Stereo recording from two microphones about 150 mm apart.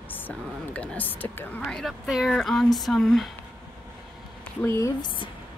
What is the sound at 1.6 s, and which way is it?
A woman's voice, centre (ahead or behind).